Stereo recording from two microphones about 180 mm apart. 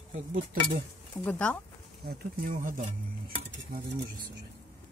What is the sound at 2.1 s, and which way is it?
Speech, 55° right (ahead or behind).